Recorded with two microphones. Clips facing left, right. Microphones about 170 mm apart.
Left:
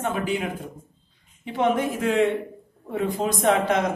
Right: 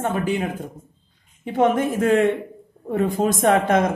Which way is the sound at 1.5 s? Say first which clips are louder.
Right 4 dB; 50° right (ahead or behind).